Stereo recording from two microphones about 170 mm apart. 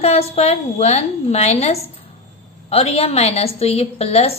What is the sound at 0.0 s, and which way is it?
A woman's voice, 40° left (ahead or behind).